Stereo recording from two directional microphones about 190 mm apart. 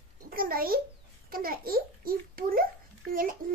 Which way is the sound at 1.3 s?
50° right (ahead or behind).